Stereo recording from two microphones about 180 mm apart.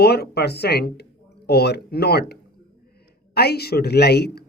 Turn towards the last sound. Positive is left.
turn(degrees=65)  # may be behind; listen again after turning